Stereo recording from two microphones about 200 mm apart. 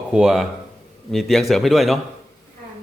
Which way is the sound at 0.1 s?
5° right (ahead or behind).